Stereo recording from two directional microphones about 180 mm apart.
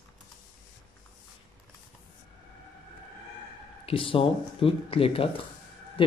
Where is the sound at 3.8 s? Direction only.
30° left (ahead or behind).